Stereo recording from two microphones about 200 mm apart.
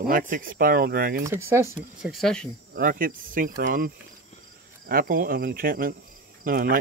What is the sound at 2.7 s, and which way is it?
Speech, 45° right (ahead or behind).